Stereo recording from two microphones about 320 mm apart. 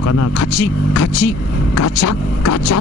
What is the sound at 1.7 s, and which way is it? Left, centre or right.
Speech, left.